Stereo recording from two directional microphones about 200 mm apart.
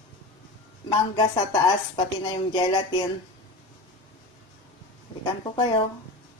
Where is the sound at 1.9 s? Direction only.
20° left (ahead or behind).